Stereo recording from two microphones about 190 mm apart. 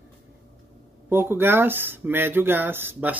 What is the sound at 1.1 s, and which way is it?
Speech, 10° right (ahead or behind).